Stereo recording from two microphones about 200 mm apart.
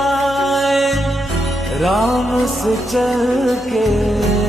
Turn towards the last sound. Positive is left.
turn(degrees=0)  # may be behind; listen again after turning